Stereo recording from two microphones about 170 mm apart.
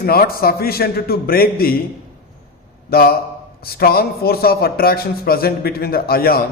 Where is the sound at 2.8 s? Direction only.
60° left (ahead or behind).